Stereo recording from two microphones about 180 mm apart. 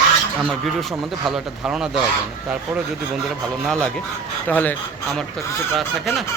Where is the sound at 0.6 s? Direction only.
Centre (ahead or behind).